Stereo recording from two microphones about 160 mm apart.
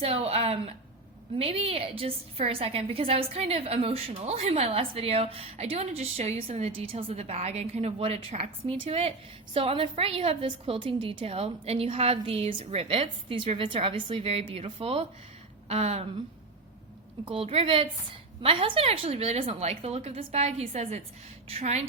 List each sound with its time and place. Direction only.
0.0 s a woman's voice: 40° right (ahead or behind)
17.2 s a woman's voice: 35° right (ahead or behind)